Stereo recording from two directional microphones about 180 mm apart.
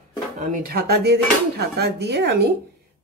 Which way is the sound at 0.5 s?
60° right (ahead or behind).